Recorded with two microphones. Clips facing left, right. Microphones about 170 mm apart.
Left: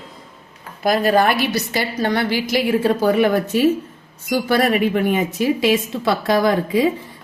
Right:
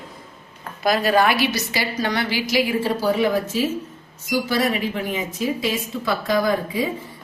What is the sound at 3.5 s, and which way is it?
Speech, 65° left (ahead or behind).